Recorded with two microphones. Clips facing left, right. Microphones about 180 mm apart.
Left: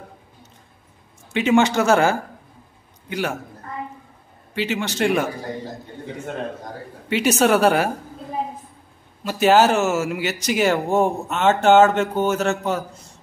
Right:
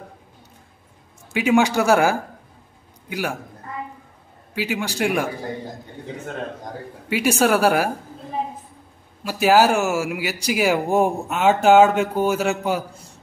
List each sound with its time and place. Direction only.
1.3 s a man's voice: 5° right (ahead or behind)
4.6 s speech: 10° right (ahead or behind)
7.1 s a woman's voice: 5° right (ahead or behind)
9.2 s speech: 5° right (ahead or behind)